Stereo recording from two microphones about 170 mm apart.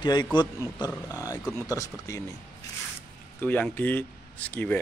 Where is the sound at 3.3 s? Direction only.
10° left (ahead or behind).